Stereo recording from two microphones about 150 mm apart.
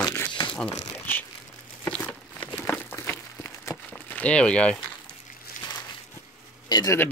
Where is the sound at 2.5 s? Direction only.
10° left (ahead or behind).